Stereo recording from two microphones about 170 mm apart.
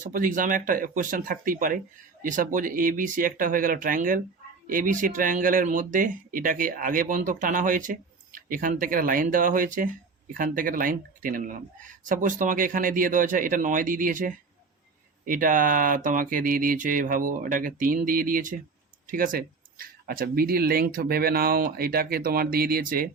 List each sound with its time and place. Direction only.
0.0 s speech: 50° right (ahead or behind)